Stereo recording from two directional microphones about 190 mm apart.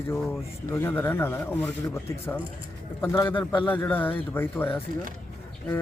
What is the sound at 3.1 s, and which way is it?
Speech, 25° left (ahead or behind).